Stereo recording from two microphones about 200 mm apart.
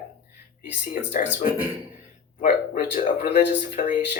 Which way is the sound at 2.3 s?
45° left (ahead or behind).